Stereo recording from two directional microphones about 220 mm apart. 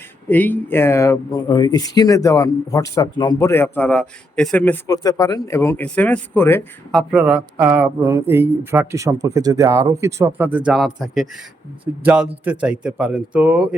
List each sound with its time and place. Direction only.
0.3 s speech: 10° left (ahead or behind)
7.1 s speech: 5° right (ahead or behind)